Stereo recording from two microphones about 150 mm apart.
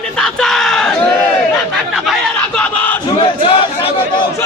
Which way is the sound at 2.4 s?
10° left (ahead or behind).